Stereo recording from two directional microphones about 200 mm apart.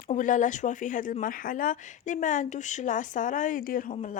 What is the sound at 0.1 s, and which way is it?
Speech, 40° left (ahead or behind).